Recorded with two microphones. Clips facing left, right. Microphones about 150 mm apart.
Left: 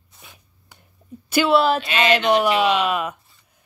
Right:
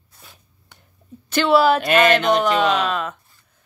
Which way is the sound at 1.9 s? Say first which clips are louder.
Right 3 dB; 50° right (ahead or behind).